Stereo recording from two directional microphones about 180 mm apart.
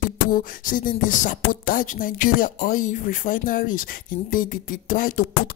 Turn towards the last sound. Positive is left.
turn(degrees=50)  # may be behind; listen again after turning